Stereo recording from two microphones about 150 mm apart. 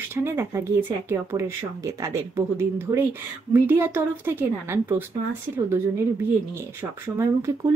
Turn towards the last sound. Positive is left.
turn(degrees=-20)  # may be behind; listen again after turning